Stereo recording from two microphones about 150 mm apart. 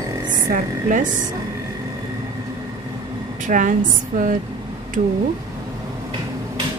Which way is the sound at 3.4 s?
60° right (ahead or behind).